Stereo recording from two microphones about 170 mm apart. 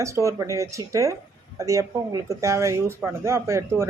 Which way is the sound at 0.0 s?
15° right (ahead or behind).